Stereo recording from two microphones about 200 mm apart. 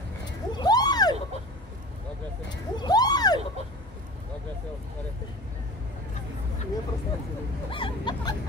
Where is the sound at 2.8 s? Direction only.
20° left (ahead or behind).